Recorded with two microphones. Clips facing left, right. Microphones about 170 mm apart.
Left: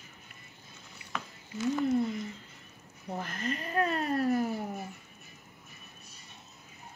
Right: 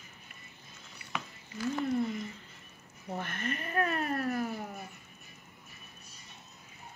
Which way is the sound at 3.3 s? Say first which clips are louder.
Left 2 dB; 30° left (ahead or behind).